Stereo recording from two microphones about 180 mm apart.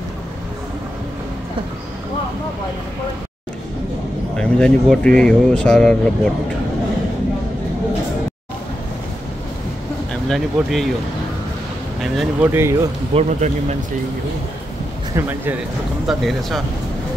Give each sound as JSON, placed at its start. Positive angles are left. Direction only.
{"t": 4.4, "sound": "speech", "side_deg": 5}
{"t": 10.2, "sound": "speech", "side_deg": 0}
{"t": 12.0, "sound": "speech", "side_deg": 0}
{"t": 12.4, "sound": "speech", "side_deg": -15}
{"t": 13.1, "sound": "speech", "side_deg": -40}
{"t": 15.1, "sound": "speech", "side_deg": -10}
{"t": 16.1, "sound": "speech", "side_deg": 0}